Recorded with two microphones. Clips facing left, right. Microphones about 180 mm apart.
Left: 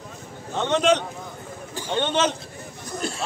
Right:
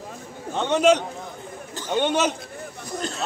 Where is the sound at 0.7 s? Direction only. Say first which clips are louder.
Right 2 dB; 10° right (ahead or behind).